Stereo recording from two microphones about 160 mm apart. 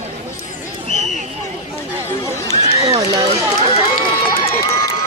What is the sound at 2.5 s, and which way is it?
Run, 35° left (ahead or behind).